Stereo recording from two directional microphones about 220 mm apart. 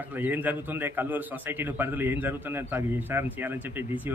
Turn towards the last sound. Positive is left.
turn(degrees=-10)  # may be behind; listen again after turning